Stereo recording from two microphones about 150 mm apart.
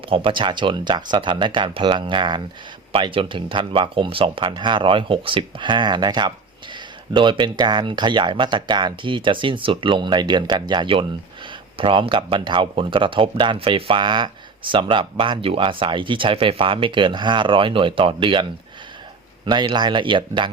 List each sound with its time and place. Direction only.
0.1 s speech: 35° right (ahead or behind)
19.5 s speech: 30° right (ahead or behind)